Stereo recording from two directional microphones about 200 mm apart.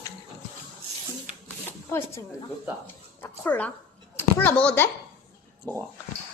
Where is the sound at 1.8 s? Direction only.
10° left (ahead or behind).